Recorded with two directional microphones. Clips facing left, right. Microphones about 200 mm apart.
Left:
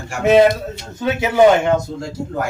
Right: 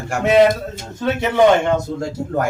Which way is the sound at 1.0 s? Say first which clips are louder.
Left 1 dB; 5° left (ahead or behind).